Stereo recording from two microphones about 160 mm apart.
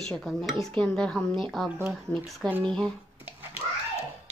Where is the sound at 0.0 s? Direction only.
Centre (ahead or behind).